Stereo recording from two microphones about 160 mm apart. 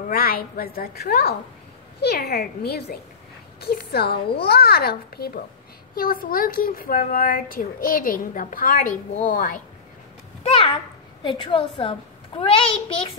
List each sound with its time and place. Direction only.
0.1 s a child's voice: 70° left (ahead or behind)
5.9 s a woman's voice: 65° left (ahead or behind)
10.5 s a child's voice: 35° left (ahead or behind)